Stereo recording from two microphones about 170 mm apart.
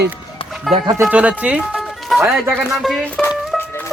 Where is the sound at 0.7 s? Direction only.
Centre (ahead or behind).